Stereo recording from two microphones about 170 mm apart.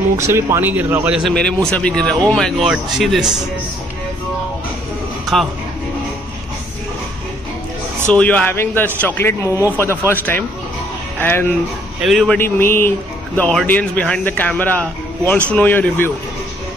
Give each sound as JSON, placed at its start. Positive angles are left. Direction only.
{"t": 0.2, "sound": "speech", "side_deg": -15}
{"t": 8.1, "sound": "speech", "side_deg": 10}
{"t": 11.1, "sound": "speech", "side_deg": 10}
{"t": 12.0, "sound": "speech", "side_deg": 0}